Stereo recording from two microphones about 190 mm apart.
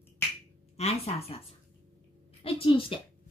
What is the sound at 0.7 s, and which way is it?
Speech, 35° left (ahead or behind).